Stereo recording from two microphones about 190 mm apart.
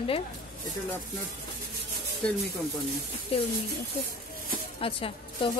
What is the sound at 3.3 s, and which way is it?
Speech, 30° left (ahead or behind).